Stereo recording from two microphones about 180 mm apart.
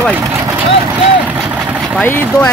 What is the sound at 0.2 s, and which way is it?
Vehicle, 15° right (ahead or behind).